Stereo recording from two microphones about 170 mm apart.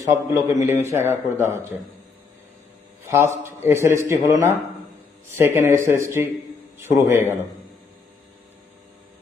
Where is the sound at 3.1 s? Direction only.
15° right (ahead or behind).